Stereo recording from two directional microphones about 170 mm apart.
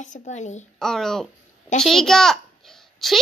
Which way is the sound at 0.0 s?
45° left (ahead or behind).